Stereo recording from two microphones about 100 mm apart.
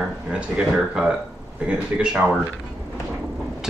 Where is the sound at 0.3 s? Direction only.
10° right (ahead or behind).